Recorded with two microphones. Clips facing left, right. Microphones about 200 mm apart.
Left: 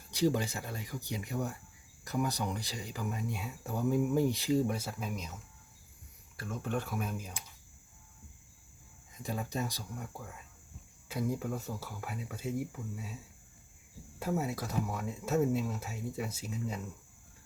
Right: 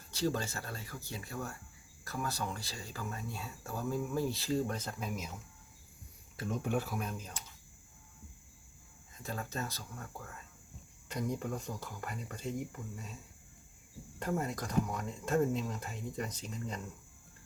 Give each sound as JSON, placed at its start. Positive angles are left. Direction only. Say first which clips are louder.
{"t": 0.1, "sound": "speech", "louder": "left 4 dB", "side_deg": 15}
{"t": 6.3, "sound": "speech", "louder": "right 2 dB", "side_deg": -20}
{"t": 9.1, "sound": "speech", "louder": "left 4 dB", "side_deg": 15}
{"t": 14.2, "sound": "speech", "louder": "left 2 dB", "side_deg": 5}